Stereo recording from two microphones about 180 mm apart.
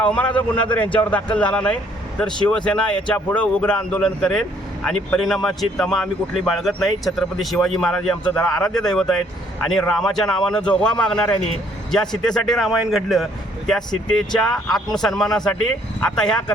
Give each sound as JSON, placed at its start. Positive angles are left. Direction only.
{"t": 0.0, "sound": "a man's voice", "side_deg": 5}